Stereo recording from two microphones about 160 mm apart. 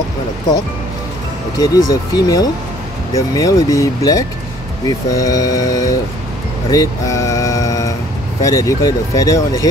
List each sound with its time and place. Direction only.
1.6 s speech: 25° left (ahead or behind)
6.7 s a sound: 20° left (ahead or behind)
8.4 s speech: 20° left (ahead or behind)